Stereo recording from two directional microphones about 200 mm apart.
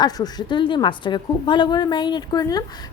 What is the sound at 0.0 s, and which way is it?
A woman's voice, 20° left (ahead or behind).